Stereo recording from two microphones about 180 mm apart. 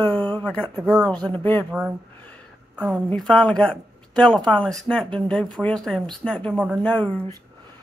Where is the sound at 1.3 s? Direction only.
10° left (ahead or behind).